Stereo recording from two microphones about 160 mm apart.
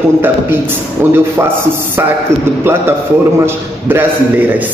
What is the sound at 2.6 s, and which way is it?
A man's voice, 15° right (ahead or behind).